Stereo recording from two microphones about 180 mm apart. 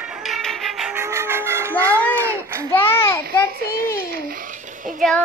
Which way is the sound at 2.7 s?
10° left (ahead or behind).